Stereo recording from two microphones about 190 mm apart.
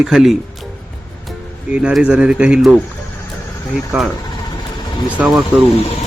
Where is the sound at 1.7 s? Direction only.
5° right (ahead or behind).